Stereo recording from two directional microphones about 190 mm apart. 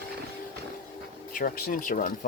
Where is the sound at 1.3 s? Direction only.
45° left (ahead or behind).